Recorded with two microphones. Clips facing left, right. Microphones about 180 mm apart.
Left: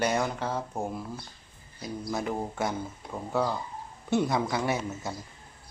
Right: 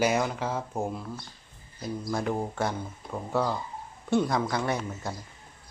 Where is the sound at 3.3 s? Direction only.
Centre (ahead or behind).